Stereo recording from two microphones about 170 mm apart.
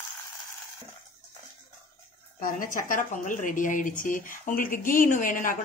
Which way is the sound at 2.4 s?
55° left (ahead or behind).